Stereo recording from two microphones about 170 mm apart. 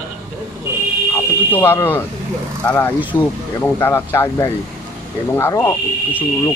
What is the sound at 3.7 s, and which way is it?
Speech, 15° left (ahead or behind).